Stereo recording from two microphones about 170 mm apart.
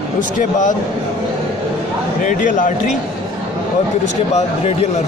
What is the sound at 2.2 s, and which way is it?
Speech, 50° left (ahead or behind).